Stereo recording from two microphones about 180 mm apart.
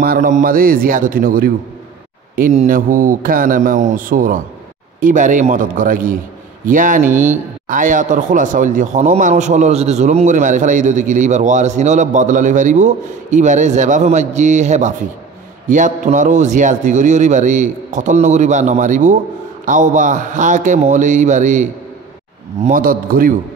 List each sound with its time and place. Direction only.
0.0 s speech: 50° right (ahead or behind)